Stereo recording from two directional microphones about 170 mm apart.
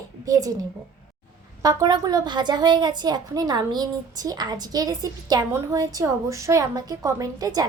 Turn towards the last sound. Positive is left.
turn(degrees=-20)  # may be behind; listen again after turning